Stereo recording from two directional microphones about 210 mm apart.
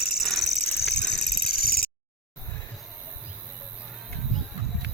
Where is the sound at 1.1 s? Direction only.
50° left (ahead or behind).